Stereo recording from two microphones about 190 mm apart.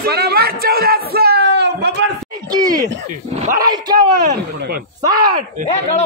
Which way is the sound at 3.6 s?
20° right (ahead or behind).